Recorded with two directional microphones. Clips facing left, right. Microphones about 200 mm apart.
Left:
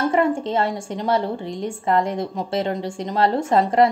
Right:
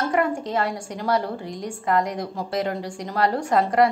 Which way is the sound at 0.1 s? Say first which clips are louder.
Left 3 dB; 25° left (ahead or behind).